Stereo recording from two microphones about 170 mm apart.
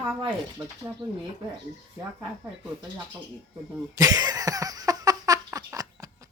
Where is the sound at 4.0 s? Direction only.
20° right (ahead or behind).